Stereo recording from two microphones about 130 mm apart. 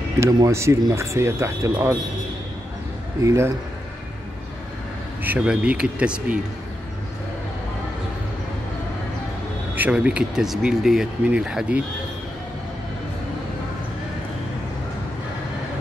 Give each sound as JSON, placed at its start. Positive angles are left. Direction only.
{"t": 0.2, "sound": "speech", "side_deg": -25}
{"t": 3.2, "sound": "speech", "side_deg": -20}
{"t": 5.2, "sound": "speech", "side_deg": -10}
{"t": 9.8, "sound": "speech", "side_deg": -10}